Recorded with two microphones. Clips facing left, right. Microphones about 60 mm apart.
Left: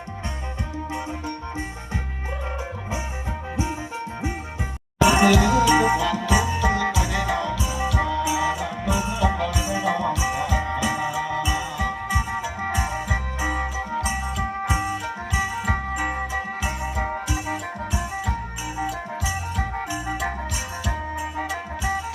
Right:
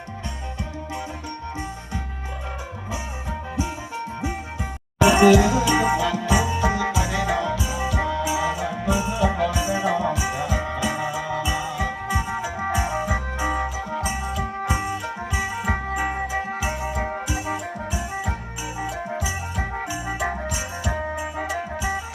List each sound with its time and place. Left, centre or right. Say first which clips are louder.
4.9 s music: right 2 dB; centre
5.3 s music: right 1 dB; centre
5.6 s music: left 2 dB; centre
19.7 s music: even; centre